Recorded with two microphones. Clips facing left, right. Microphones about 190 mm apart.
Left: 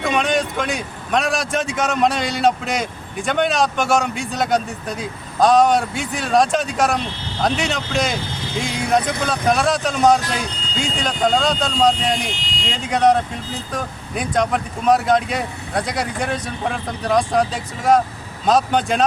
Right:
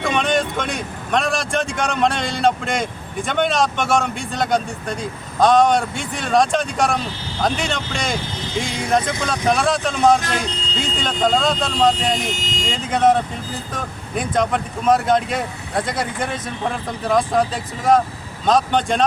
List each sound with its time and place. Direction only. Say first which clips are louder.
0.0 s speech: even; centre (ahead or behind)
12.1 s speech: right 1 dB; 45° right (ahead or behind)
12.7 s speech: even; centre (ahead or behind)